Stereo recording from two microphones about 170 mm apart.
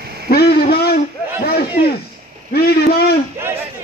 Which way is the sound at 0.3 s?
65° left (ahead or behind).